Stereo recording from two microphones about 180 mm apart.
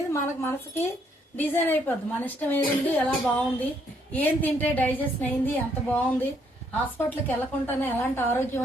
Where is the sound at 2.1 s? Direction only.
10° left (ahead or behind).